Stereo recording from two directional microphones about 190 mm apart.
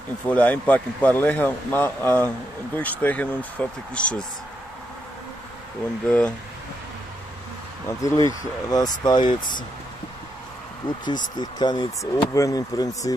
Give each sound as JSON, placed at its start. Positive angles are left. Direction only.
{"t": 0.3, "sound": "speech", "side_deg": 10}
{"t": 6.0, "sound": "speech", "side_deg": 5}
{"t": 8.0, "sound": "speech", "side_deg": 15}
{"t": 11.1, "sound": "speech", "side_deg": 25}